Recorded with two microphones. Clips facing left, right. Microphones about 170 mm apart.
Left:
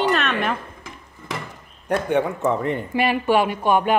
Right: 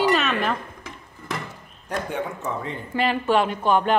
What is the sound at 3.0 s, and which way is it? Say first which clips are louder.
Speech: left 1 dB; 10° left (ahead or behind).